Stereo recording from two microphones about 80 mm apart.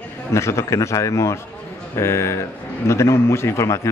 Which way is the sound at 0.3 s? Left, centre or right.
Left.